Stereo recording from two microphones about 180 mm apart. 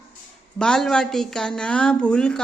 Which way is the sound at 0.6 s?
5° left (ahead or behind).